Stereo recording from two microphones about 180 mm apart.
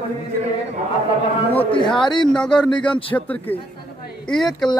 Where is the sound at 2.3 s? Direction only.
5° left (ahead or behind).